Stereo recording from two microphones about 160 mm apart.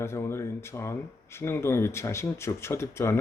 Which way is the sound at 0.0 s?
15° left (ahead or behind).